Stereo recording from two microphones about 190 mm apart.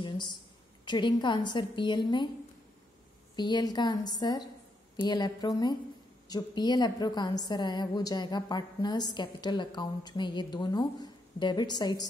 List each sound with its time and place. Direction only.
0.0 s a sound: 25° left (ahead or behind)
0.8 s a woman's voice: 25° left (ahead or behind)
3.3 s a woman's voice: 20° left (ahead or behind)